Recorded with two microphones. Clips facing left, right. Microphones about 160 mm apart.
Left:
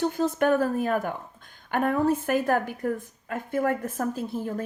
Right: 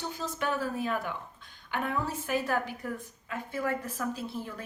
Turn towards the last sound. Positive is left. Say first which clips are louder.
# left 7 dB
turn(degrees=45)  # may be behind; listen again after turning